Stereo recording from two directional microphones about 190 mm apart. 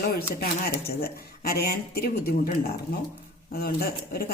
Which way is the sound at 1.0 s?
55° left (ahead or behind).